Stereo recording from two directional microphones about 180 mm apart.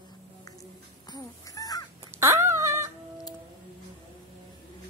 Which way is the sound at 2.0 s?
15° right (ahead or behind).